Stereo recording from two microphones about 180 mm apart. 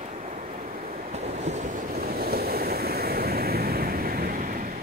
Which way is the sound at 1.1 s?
40° right (ahead or behind).